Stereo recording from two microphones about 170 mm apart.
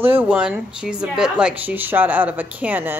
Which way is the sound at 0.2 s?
5° right (ahead or behind).